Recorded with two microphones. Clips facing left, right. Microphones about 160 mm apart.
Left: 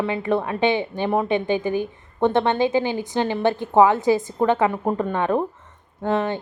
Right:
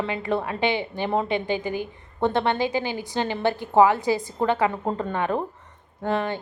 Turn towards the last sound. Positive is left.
turn(degrees=20)  # may be behind; listen again after turning